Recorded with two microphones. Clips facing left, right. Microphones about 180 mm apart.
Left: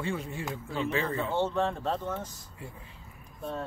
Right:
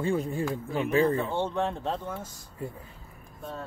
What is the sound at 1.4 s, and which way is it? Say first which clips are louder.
Speech: even; 15° right (ahead or behind).